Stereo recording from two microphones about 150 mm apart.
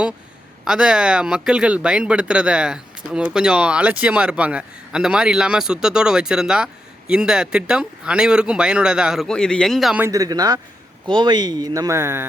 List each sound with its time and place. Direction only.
0.6 s speech: 5° right (ahead or behind)
10.0 s speech: 25° right (ahead or behind)